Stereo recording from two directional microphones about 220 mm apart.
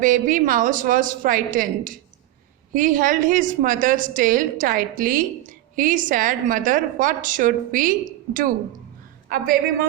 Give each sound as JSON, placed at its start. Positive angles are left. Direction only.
{"t": 0.0, "sound": "a woman's voice", "side_deg": -40}